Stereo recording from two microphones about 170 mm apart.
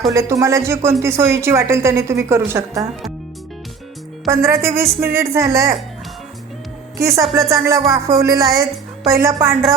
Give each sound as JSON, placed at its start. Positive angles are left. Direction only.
{"t": 0.1, "sound": "speech", "side_deg": -20}
{"t": 4.4, "sound": "speech", "side_deg": -15}
{"t": 7.0, "sound": "speech", "side_deg": -15}